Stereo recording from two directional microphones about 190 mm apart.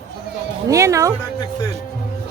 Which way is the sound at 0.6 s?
15° right (ahead or behind).